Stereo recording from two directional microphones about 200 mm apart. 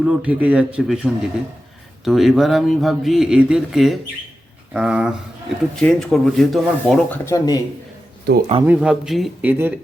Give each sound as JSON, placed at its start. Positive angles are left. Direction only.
{"t": 0.0, "sound": "speech", "side_deg": -5}
{"t": 7.3, "sound": "speech", "side_deg": 15}
{"t": 8.3, "sound": "speech", "side_deg": -55}
{"t": 8.6, "sound": "a man's voice", "side_deg": -5}